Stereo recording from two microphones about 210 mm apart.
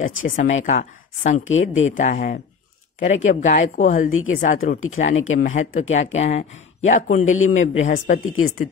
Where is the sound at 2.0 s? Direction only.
35° left (ahead or behind).